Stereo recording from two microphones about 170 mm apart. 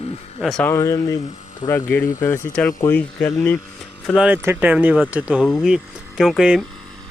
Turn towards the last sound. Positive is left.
turn(degrees=-5)  # may be behind; listen again after turning